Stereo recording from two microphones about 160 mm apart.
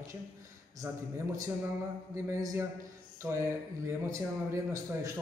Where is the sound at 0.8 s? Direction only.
20° right (ahead or behind).